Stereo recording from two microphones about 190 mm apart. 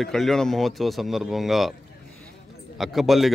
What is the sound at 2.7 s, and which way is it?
Speech, centre (ahead or behind).